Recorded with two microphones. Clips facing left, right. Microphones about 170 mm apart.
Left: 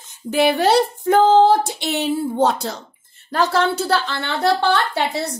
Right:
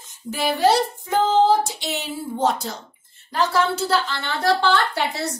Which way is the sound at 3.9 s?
70° left (ahead or behind).